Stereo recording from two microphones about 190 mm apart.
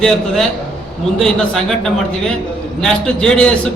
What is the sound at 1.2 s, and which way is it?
A man's voice, 5° left (ahead or behind).